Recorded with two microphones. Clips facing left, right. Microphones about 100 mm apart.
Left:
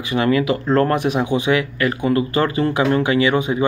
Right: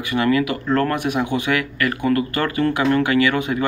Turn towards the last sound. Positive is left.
turn(degrees=20)  # may be behind; listen again after turning